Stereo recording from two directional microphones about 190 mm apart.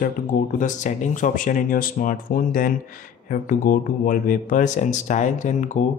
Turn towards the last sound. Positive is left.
turn(degrees=40)  # may be behind; listen again after turning